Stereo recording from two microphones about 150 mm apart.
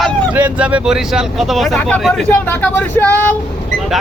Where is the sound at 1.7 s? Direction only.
5° left (ahead or behind).